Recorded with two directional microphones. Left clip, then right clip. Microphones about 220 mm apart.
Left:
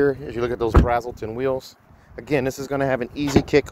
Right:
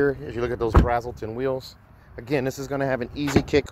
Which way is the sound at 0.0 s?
Centre (ahead or behind).